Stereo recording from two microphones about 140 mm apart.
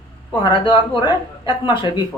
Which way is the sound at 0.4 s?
35° left (ahead or behind).